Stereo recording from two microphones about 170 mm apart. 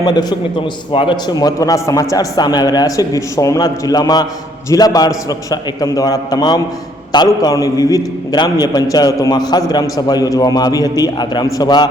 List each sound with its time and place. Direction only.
0.0 s a man's voice: 25° left (ahead or behind)